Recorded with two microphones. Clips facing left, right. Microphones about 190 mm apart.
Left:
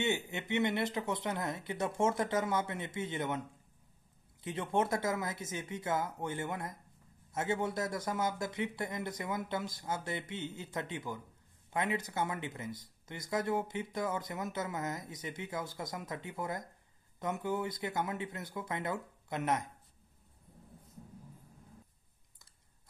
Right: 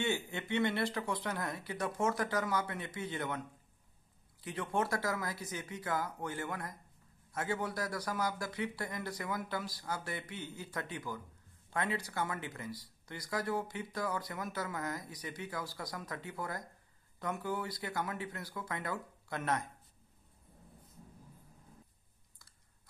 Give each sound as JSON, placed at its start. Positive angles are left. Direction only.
{"t": 0.0, "sound": "speech", "side_deg": 20}